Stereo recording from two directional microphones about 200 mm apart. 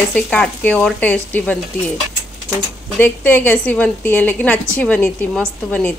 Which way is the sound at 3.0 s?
10° left (ahead or behind).